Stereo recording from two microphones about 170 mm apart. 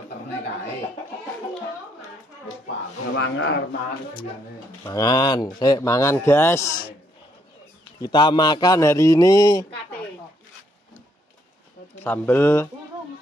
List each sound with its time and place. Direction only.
2.6 s speech: 90° left
4.8 s speech: 25° left (ahead or behind)
8.0 s speech: 30° left (ahead or behind)
12.0 s speech: 10° left (ahead or behind)